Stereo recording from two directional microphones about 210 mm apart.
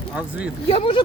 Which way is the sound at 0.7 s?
25° left (ahead or behind).